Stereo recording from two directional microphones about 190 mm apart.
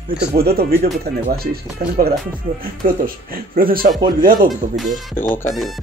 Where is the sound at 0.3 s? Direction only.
55° right (ahead or behind).